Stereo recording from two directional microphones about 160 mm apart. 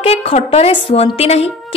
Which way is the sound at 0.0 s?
40° left (ahead or behind).